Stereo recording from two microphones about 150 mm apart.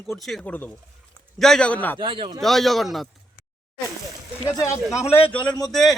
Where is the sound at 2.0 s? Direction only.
35° right (ahead or behind).